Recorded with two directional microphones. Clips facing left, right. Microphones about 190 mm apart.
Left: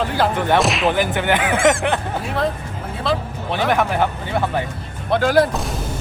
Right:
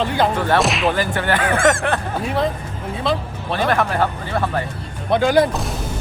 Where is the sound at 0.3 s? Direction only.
15° left (ahead or behind).